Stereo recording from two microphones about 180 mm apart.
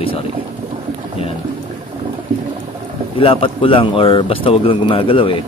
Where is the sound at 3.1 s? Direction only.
30° left (ahead or behind).